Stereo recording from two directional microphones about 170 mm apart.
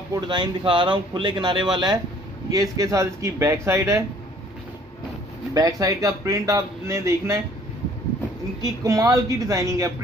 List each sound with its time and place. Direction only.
0.1 s speech: 25° right (ahead or behind)
5.5 s speech: 20° right (ahead or behind)
8.6 s speech: 20° right (ahead or behind)